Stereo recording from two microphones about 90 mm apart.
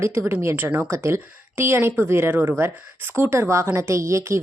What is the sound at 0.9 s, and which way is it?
A woman's voice, 30° right (ahead or behind).